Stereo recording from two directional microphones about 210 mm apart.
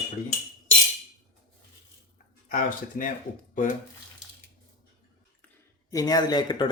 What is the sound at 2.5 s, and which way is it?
Speech, 40° left (ahead or behind).